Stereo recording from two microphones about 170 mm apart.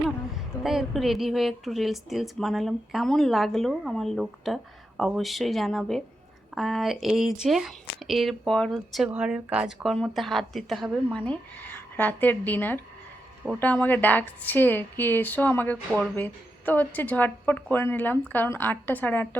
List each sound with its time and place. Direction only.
0.3 s a woman's voice: centre (ahead or behind)